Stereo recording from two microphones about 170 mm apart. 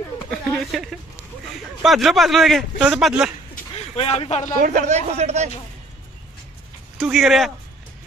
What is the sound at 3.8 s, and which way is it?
Speech, 35° left (ahead or behind).